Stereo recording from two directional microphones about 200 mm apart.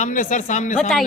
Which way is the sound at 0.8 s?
Centre (ahead or behind).